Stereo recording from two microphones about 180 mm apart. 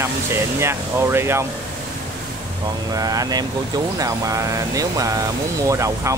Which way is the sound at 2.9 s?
20° right (ahead or behind).